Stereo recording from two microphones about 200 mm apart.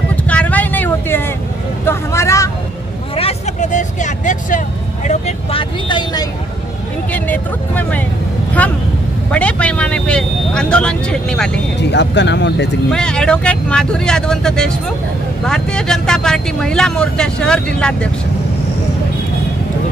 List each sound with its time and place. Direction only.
0.1 s a sound: 5° left (ahead or behind)
1.9 s speech: 15° left (ahead or behind)
3.2 s vehicle: 35° left (ahead or behind)
5.0 s speech: 35° left (ahead or behind)
7.1 s speech: 10° left (ahead or behind)
11.9 s speech: 60° left (ahead or behind)
12.9 s speech: 5° left (ahead or behind)